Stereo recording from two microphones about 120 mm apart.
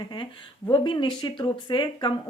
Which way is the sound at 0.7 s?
40° left (ahead or behind).